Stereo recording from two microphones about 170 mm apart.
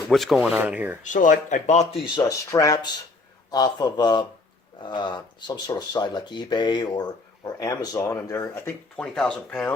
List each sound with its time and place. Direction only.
0.1 s speech: centre (ahead or behind)
1.0 s speech: 50° left (ahead or behind)
2.1 s speech: 20° left (ahead or behind)